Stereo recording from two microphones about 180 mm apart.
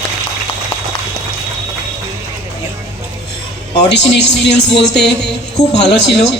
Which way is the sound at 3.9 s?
70° left (ahead or behind).